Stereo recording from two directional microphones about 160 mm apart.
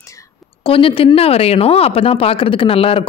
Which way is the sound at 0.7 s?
35° left (ahead or behind).